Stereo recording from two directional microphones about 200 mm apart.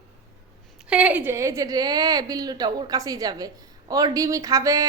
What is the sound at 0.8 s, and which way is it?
A woman's voice, 5° right (ahead or behind).